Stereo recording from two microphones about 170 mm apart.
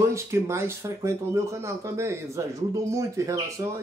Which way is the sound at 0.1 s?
15° right (ahead or behind).